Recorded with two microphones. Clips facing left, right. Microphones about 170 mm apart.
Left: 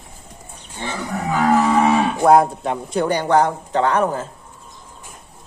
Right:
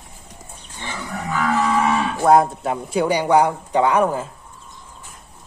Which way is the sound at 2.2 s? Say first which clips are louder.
Even; centre (ahead or behind).